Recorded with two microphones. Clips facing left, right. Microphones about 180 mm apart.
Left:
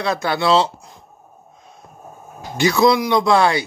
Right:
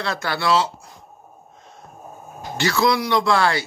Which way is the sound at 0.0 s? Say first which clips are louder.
Left 5 dB; 20° left (ahead or behind).